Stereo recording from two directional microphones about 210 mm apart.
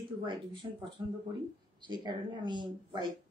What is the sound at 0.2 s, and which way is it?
Speech, 25° right (ahead or behind).